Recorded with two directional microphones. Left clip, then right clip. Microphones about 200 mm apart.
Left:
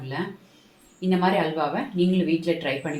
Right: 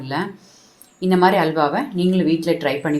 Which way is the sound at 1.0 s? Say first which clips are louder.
Right 7 dB; 50° right (ahead or behind).